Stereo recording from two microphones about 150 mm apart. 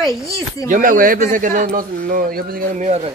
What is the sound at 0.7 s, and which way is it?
Speech, 65° right (ahead or behind).